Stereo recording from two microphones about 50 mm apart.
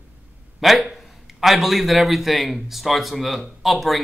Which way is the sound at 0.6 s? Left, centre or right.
Centre.